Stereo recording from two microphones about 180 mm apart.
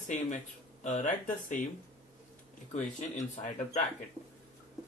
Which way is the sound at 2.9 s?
45° left (ahead or behind).